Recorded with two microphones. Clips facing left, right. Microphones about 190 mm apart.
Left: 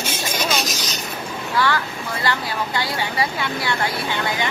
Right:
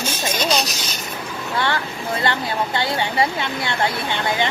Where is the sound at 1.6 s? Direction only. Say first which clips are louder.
Left 2 dB; 25° right (ahead or behind).